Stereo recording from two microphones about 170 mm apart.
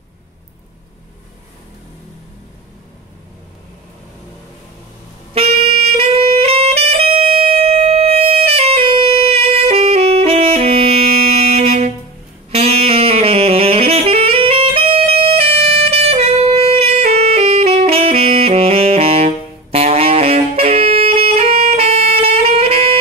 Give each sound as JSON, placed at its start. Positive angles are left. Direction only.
{"t": 5.3, "sound": "saxophone", "side_deg": -35}
{"t": 11.2, "sound": "music", "side_deg": -35}
{"t": 12.4, "sound": "saxophone", "side_deg": -35}